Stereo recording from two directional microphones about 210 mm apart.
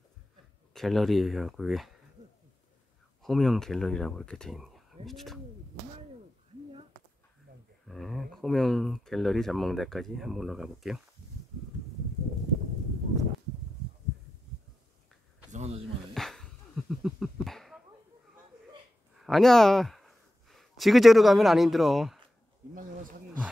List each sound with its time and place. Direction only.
0.7 s speech: centre (ahead or behind)
3.2 s speech: centre (ahead or behind)
7.9 s speech: centre (ahead or behind)
15.5 s a sound: 30° right (ahead or behind)
16.2 s a sound: centre (ahead or behind)
19.1 s speech: centre (ahead or behind)